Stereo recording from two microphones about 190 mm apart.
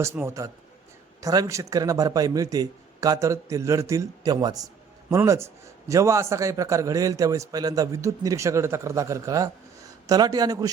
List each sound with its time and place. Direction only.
0.0 s a man's voice: 15° right (ahead or behind)